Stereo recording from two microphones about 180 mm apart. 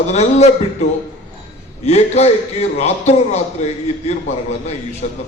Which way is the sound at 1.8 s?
35° left (ahead or behind).